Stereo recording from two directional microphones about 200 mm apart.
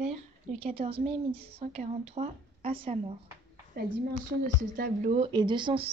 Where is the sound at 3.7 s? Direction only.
50° right (ahead or behind).